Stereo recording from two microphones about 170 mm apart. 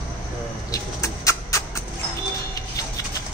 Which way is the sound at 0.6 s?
20° left (ahead or behind).